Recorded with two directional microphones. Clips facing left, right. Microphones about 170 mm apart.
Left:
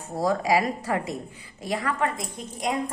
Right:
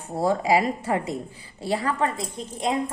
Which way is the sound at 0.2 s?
25° right (ahead or behind).